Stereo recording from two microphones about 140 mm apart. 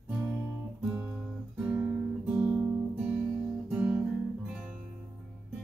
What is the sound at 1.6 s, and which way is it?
Guitar, 10° right (ahead or behind).